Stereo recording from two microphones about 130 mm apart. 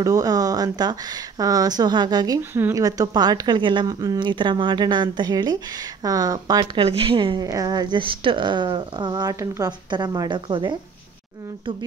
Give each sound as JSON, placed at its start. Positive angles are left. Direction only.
{"t": 0.0, "sound": "speech", "side_deg": -30}
{"t": 6.9, "sound": "speech", "side_deg": -45}
{"t": 9.7, "sound": "speech", "side_deg": -35}